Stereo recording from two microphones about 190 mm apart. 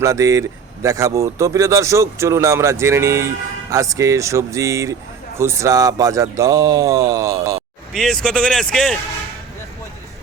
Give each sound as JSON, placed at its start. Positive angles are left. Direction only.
{"t": 0.0, "sound": "speech", "side_deg": -15}
{"t": 7.9, "sound": "speech", "side_deg": 5}